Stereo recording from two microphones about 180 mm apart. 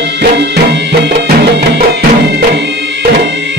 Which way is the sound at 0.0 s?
70° right (ahead or behind).